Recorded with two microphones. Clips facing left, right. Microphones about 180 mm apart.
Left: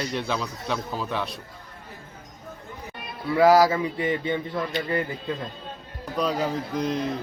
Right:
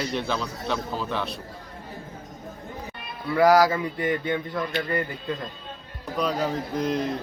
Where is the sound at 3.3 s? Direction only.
Centre (ahead or behind).